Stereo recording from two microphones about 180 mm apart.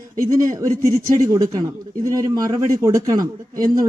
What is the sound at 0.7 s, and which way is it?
Speech, 50° right (ahead or behind).